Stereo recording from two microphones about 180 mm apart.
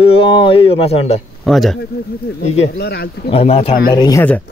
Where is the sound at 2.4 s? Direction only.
35° left (ahead or behind).